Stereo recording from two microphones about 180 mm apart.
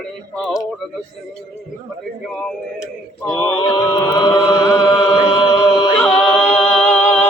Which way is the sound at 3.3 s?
20° left (ahead or behind).